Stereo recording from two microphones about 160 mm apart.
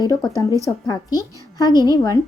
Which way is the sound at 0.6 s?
25° left (ahead or behind).